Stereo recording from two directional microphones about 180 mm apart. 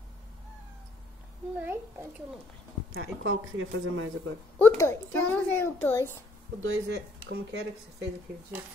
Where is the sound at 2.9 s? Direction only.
90° right.